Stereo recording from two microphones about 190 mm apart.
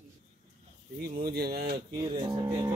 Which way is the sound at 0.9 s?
55° right (ahead or behind).